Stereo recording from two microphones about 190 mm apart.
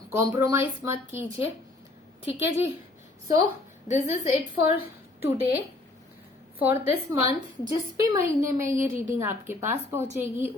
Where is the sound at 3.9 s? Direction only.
40° left (ahead or behind).